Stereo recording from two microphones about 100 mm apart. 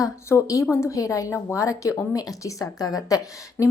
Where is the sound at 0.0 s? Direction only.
30° left (ahead or behind).